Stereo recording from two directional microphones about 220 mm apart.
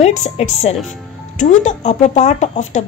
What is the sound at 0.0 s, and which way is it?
Speech, 30° left (ahead or behind).